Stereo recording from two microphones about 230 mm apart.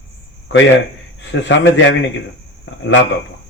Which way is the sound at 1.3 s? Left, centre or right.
Left.